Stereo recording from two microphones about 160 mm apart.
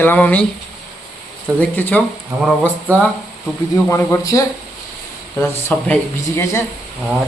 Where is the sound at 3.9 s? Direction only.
20° left (ahead or behind).